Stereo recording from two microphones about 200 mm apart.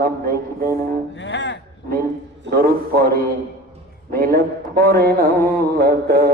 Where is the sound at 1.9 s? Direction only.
50° right (ahead or behind).